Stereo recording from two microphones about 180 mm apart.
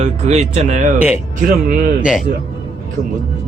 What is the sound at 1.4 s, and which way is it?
Speech, 50° right (ahead or behind).